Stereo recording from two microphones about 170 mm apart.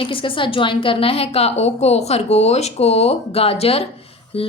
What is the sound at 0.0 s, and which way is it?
A woman's voice, 30° left (ahead or behind).